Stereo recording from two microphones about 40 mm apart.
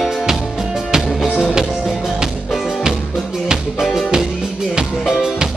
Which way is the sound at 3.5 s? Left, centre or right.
Centre.